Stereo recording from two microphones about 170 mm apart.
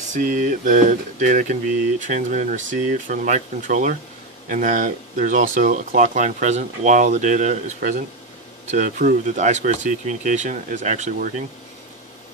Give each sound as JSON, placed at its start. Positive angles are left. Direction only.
{"t": 0.1, "sound": "speech", "side_deg": -50}